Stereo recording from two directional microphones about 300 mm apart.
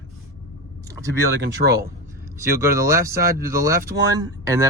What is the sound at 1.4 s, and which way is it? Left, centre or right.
Speech, right.